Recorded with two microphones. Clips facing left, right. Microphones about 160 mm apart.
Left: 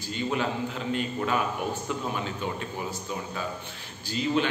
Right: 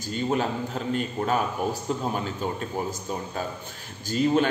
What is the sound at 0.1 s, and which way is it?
A man's voice, 40° right (ahead or behind).